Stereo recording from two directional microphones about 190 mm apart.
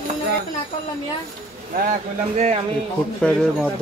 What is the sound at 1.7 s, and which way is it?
Speech, 40° right (ahead or behind).